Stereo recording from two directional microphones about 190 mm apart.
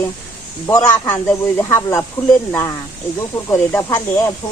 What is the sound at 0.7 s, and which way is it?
Speech, 15° left (ahead or behind).